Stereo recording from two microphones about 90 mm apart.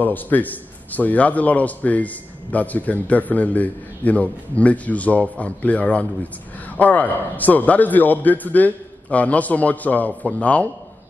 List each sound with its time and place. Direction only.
0.0 s a man's voice: 20° left (ahead or behind)